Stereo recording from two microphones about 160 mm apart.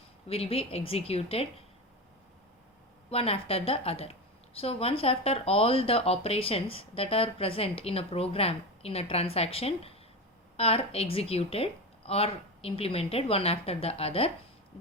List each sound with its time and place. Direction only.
0.3 s a woman's voice: 35° left (ahead or behind)
3.1 s a woman's voice: 35° left (ahead or behind)